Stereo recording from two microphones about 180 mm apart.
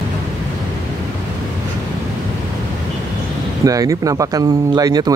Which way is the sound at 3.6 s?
20° right (ahead or behind).